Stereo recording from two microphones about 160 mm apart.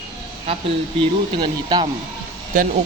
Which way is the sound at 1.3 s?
30° right (ahead or behind).